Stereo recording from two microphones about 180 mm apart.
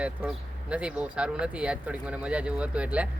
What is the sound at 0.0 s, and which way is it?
Speech, 5° right (ahead or behind).